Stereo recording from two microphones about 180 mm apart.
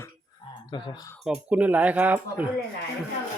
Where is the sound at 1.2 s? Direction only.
5° right (ahead or behind).